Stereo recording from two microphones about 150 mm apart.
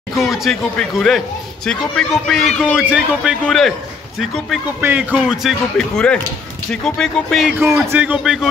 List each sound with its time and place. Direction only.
0.2 s a man's voice: centre (ahead or behind)
7.9 s a man's voice: 10° right (ahead or behind)